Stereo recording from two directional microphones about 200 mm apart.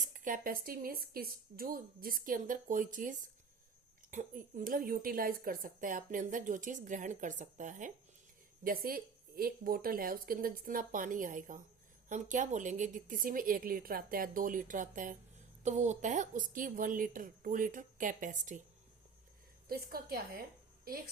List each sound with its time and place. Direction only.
0.0 s speech: 40° right (ahead or behind)
19.6 s speech: 50° right (ahead or behind)